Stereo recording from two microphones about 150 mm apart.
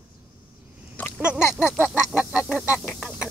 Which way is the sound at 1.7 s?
10° right (ahead or behind).